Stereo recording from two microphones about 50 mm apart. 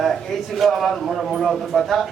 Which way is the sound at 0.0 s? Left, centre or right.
Centre.